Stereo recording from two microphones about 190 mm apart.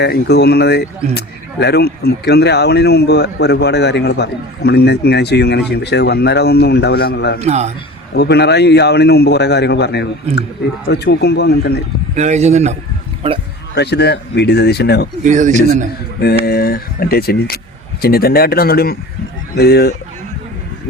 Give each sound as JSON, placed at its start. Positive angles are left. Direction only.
{"t": 0.0, "sound": "speech", "side_deg": 60}
{"t": 7.4, "sound": "speech", "side_deg": -35}
{"t": 8.1, "sound": "speech", "side_deg": 60}
{"t": 12.1, "sound": "speech", "side_deg": -35}
{"t": 13.7, "sound": "speech", "side_deg": 60}
{"t": 15.2, "sound": "speech", "side_deg": -40}
{"t": 16.2, "sound": "speech", "side_deg": 55}